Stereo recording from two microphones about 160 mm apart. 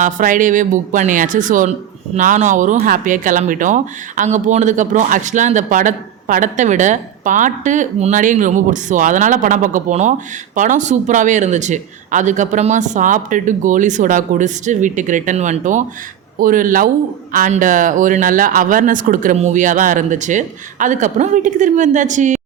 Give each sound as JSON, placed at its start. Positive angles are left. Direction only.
{"t": 0.0, "sound": "speech", "side_deg": -55}